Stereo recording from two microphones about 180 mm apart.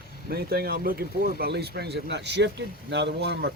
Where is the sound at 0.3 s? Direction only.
60° right (ahead or behind).